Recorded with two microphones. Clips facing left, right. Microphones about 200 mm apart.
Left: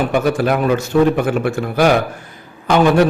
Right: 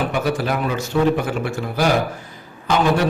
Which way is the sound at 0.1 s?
55° left (ahead or behind).